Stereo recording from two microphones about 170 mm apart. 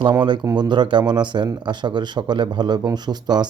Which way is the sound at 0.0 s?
25° right (ahead or behind).